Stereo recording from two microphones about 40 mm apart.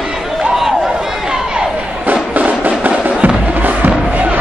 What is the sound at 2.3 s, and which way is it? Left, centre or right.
Music, right.